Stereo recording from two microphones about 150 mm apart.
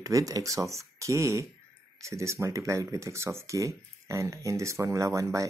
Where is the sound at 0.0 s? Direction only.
20° right (ahead or behind).